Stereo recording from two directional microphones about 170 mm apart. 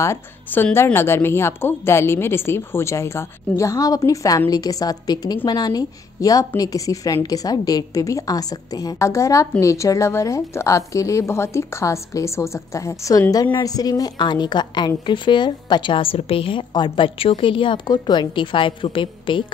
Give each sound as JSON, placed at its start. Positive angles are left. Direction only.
{"t": 0.0, "sound": "a woman's voice", "side_deg": 15}